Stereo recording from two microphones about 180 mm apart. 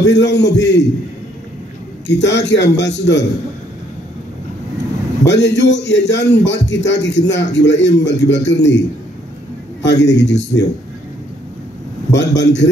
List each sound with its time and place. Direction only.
0.0 s a man's voice: 75° left (ahead or behind)
2.0 s a man's voice: 75° left (ahead or behind)
5.2 s a man's voice: 75° left (ahead or behind)
10.0 s a man's voice: 75° left (ahead or behind)
12.1 s a man's voice: 80° left